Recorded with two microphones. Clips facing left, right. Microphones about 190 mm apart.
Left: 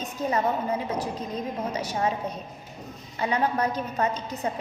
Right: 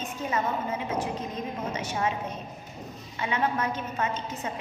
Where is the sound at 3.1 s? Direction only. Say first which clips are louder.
Left 3 dB; 40° left (ahead or behind).